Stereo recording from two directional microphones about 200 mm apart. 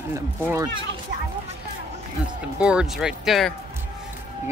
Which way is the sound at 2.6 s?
5° right (ahead or behind).